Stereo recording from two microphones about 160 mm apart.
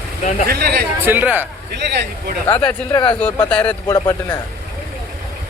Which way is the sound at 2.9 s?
30° left (ahead or behind).